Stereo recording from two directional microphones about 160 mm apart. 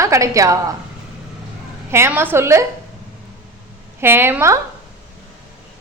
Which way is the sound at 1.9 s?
15° right (ahead or behind).